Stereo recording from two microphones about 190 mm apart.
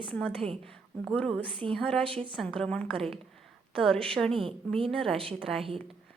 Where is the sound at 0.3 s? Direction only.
30° right (ahead or behind).